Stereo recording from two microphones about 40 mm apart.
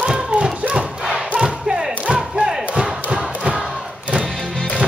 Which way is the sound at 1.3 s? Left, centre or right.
Centre.